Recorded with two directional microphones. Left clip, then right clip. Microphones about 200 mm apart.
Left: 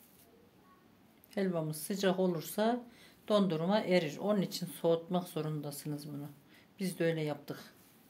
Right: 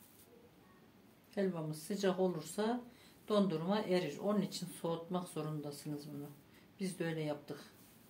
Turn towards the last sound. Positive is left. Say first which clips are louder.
# left 5 dB
turn(degrees=65)  # may be behind; listen again after turning